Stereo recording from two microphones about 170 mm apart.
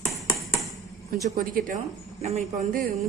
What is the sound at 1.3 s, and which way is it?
Speech, 55° right (ahead or behind).